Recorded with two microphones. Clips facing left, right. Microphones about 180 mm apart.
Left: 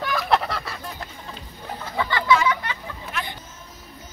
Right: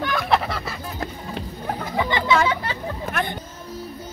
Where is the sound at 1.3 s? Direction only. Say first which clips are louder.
Right 7 dB; 65° right (ahead or behind).